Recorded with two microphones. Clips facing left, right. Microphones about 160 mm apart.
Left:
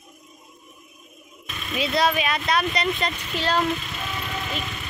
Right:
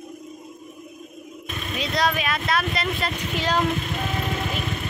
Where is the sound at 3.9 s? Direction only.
50° right (ahead or behind).